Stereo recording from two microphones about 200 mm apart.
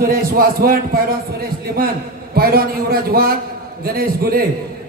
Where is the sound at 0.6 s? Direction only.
50° right (ahead or behind).